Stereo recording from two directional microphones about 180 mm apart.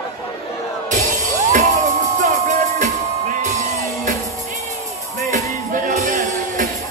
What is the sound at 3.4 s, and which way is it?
Music, 45° right (ahead or behind).